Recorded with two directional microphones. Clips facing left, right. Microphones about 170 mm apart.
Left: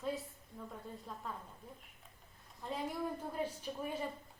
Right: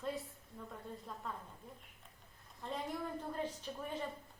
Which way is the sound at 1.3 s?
Centre (ahead or behind).